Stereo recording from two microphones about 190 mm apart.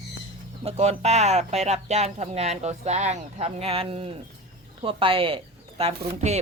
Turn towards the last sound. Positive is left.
turn(degrees=-35)  # may be behind; listen again after turning